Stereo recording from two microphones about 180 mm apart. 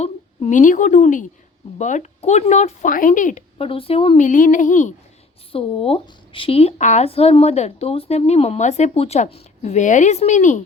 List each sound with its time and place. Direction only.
0.0 s a woman's voice: 40° left (ahead or behind)
3.6 s speech: 30° left (ahead or behind)
5.5 s a woman's voice: 30° left (ahead or behind)